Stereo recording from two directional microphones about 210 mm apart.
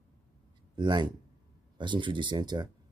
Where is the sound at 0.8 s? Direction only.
20° right (ahead or behind).